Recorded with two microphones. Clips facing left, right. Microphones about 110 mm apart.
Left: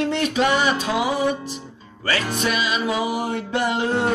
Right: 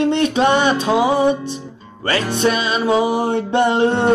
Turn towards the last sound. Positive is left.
turn(degrees=-25)  # may be behind; listen again after turning